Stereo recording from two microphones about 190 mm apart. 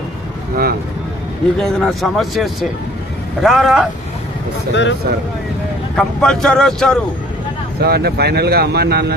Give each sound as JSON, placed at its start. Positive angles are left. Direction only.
{"t": 0.5, "sound": "speech", "side_deg": -55}
{"t": 1.5, "sound": "speech", "side_deg": 0}
{"t": 4.7, "sound": "speech", "side_deg": 70}
{"t": 6.0, "sound": "speech", "side_deg": 5}
{"t": 7.8, "sound": "speech", "side_deg": -60}